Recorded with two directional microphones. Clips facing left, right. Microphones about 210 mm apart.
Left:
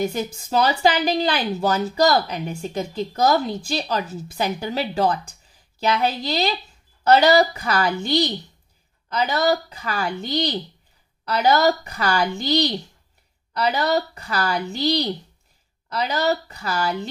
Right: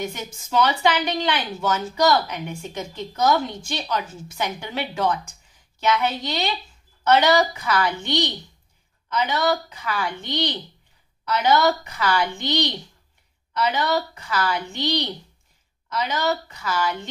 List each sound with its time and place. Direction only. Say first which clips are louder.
0.0 s a woman's voice: left 6 dB; 35° left (ahead or behind)